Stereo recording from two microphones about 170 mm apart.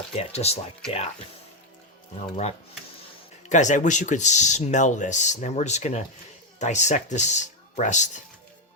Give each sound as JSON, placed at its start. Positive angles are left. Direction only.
{"t": 0.2, "sound": "speech", "side_deg": 35}
{"t": 2.3, "sound": "speech", "side_deg": 40}